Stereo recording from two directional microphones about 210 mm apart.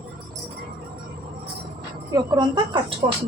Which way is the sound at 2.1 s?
20° right (ahead or behind).